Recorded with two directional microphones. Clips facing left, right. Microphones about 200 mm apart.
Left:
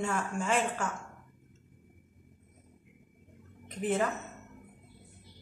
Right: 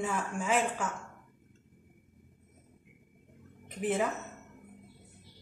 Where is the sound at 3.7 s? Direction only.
10° right (ahead or behind).